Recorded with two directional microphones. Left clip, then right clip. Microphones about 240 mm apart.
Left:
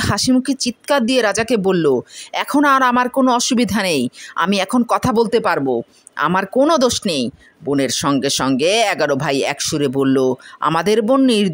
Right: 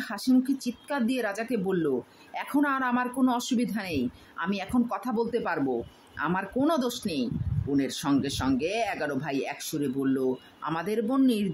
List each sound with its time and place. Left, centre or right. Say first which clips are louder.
0.0 s speech: left 10 dB; left